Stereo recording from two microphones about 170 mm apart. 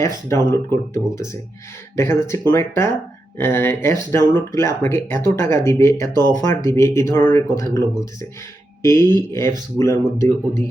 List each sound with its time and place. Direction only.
0.0 s speech: 15° left (ahead or behind)